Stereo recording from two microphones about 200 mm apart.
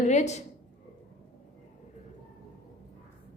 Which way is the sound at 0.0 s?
35° left (ahead or behind).